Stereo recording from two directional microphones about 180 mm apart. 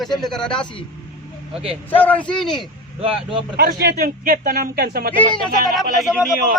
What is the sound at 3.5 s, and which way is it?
Speech, 60° right (ahead or behind).